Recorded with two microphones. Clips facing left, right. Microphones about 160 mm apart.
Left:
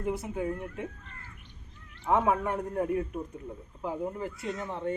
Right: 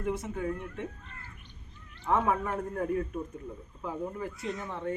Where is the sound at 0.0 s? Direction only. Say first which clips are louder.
Left 1 dB; 5° left (ahead or behind).